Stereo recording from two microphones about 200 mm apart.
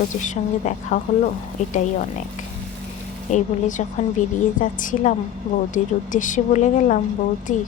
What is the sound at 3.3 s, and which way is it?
A woman's voice, 35° left (ahead or behind).